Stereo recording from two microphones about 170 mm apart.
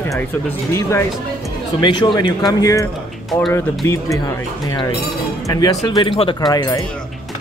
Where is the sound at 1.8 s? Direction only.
25° left (ahead or behind).